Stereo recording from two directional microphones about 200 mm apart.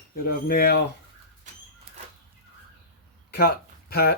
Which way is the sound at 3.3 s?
50° left (ahead or behind).